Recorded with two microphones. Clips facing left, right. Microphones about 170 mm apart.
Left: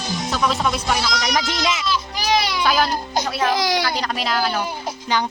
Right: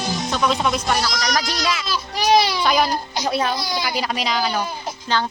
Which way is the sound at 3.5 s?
90° left.